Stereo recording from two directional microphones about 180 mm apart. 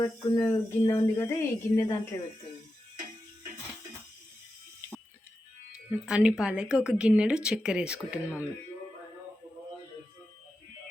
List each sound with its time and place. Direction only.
0.0 s speech: 20° left (ahead or behind)
5.7 s speech: 5° right (ahead or behind)